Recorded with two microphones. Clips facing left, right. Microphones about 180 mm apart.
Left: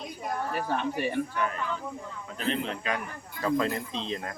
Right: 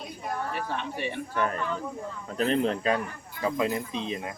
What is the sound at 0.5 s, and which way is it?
Speech, 45° left (ahead or behind).